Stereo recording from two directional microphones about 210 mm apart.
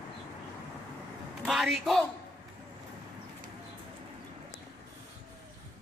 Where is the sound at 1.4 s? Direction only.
Centre (ahead or behind).